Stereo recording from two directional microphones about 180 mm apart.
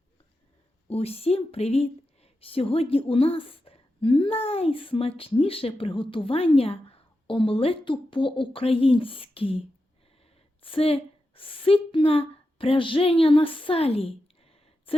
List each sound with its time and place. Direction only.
0.9 s a woman's voice: 35° left (ahead or behind)